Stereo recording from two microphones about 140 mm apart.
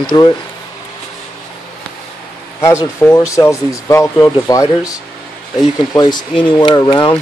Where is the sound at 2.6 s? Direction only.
20° left (ahead or behind).